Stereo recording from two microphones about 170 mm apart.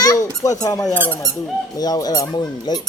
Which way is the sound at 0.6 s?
20° left (ahead or behind).